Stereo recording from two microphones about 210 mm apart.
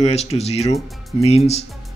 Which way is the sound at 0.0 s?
30° left (ahead or behind).